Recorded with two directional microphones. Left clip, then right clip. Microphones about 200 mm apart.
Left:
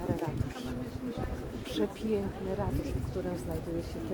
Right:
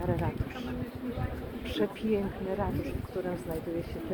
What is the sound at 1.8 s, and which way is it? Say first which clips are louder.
Speech: right 2 dB; 30° right (ahead or behind).